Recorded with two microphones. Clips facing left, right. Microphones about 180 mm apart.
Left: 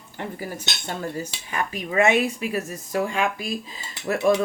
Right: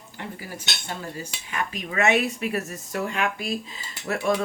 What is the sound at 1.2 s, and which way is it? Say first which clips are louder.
Dishes: left 2 dB; 35° left (ahead or behind).